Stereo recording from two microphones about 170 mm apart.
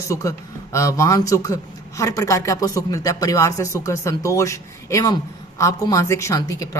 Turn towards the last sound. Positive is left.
turn(degrees=20)  # may be behind; listen again after turning